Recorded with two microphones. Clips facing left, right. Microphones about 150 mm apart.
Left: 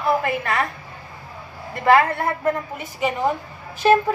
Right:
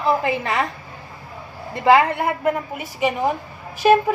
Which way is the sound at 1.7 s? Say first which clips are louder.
Right 1 dB; 20° right (ahead or behind).